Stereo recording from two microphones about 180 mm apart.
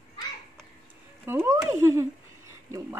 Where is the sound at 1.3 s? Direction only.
15° right (ahead or behind).